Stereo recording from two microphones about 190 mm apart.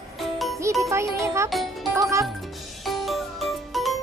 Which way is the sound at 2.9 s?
Centre (ahead or behind).